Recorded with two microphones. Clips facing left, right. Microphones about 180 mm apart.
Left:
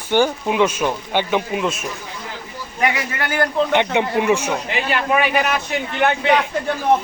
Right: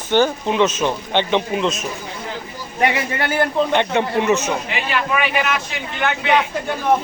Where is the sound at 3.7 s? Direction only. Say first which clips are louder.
Even; 15° left (ahead or behind).